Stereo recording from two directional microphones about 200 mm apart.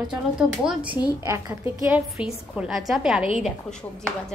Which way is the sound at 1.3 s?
10° right (ahead or behind).